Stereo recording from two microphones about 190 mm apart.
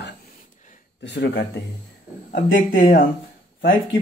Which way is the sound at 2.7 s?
50° left (ahead or behind).